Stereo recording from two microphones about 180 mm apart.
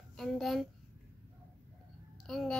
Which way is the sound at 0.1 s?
Centre (ahead or behind).